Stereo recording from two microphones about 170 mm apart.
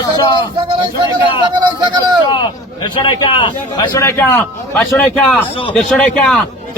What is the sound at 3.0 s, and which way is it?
A man's voice, 30° left (ahead or behind).